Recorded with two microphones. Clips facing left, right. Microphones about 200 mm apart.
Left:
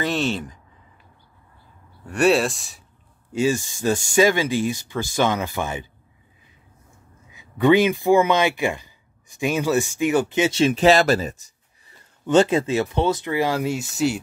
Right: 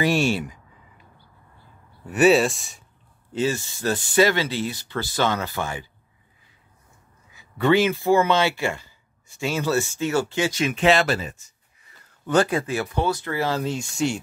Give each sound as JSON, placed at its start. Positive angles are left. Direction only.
{"t": 0.0, "sound": "speech", "side_deg": -10}
{"t": 2.0, "sound": "speech", "side_deg": -5}
{"t": 3.3, "sound": "speech", "side_deg": 15}
{"t": 7.2, "sound": "speech", "side_deg": 15}
{"t": 12.3, "sound": "speech", "side_deg": 25}